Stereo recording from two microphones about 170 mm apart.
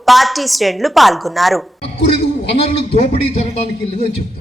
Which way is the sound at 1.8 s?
35° left (ahead or behind).